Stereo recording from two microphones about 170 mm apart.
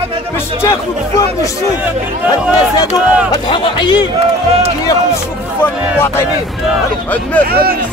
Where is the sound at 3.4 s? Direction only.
30° left (ahead or behind).